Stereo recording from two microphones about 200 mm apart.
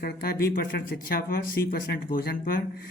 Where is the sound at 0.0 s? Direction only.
50° left (ahead or behind).